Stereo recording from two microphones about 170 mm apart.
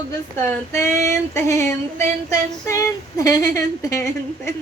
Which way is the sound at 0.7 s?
15° left (ahead or behind).